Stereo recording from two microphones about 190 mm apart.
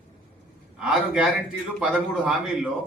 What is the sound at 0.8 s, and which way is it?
Speech, 5° right (ahead or behind).